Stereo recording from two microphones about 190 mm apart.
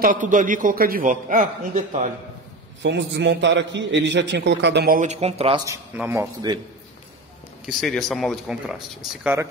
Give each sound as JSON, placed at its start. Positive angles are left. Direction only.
{"t": 0.0, "sound": "a man's voice", "side_deg": -45}
{"t": 2.8, "sound": "a man's voice", "side_deg": -65}
{"t": 5.7, "sound": "speech", "side_deg": -10}
{"t": 7.6, "sound": "speech", "side_deg": 0}